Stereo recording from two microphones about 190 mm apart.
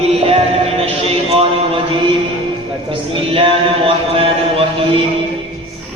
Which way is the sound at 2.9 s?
30° right (ahead or behind).